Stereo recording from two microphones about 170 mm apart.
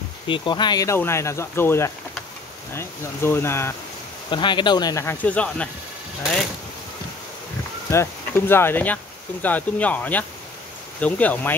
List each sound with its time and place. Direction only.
0.3 s speech: 25° left (ahead or behind)
4.3 s speech: 30° left (ahead or behind); by 5.7 s 5° left (ahead or behind)
7.9 s speech: 15° left (ahead or behind)